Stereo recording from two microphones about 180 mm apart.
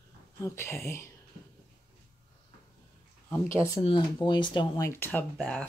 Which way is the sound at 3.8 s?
25° left (ahead or behind).